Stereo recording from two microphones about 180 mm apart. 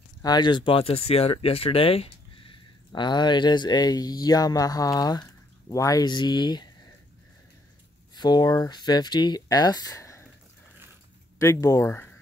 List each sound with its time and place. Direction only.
0.2 s speech: 25° left (ahead or behind)
8.1 s speech: 25° left (ahead or behind)
11.3 s speech: 15° left (ahead or behind)